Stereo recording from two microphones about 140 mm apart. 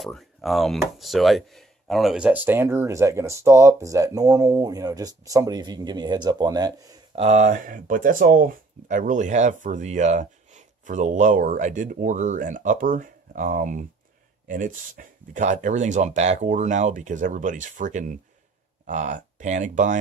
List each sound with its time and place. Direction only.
0.0 s speech: centre (ahead or behind); by 7.0 s 30° right (ahead or behind)
7.2 s speech: 55° right (ahead or behind)